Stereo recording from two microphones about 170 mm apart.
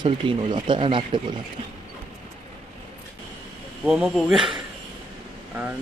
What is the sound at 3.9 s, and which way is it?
Speech, 5° right (ahead or behind).